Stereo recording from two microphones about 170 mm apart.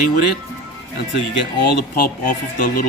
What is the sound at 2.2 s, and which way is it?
Speech, 50° left (ahead or behind).